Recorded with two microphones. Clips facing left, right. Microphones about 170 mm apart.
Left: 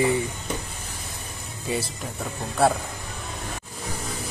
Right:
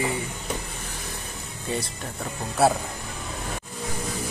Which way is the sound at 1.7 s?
5° left (ahead or behind).